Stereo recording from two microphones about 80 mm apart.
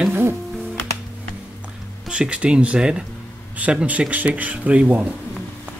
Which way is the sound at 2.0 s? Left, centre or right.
Centre.